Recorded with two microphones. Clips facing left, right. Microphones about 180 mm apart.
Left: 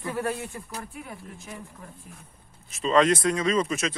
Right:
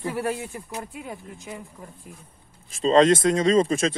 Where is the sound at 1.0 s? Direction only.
20° right (ahead or behind).